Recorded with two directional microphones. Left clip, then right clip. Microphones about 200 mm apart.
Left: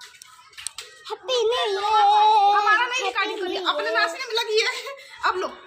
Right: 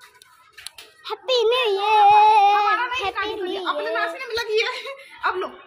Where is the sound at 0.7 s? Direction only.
10° right (ahead or behind).